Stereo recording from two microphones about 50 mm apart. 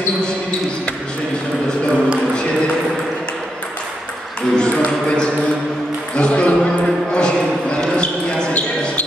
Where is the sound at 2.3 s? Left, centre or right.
Centre.